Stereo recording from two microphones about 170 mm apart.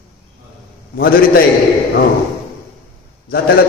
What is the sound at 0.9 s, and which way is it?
Speech, 60° left (ahead or behind).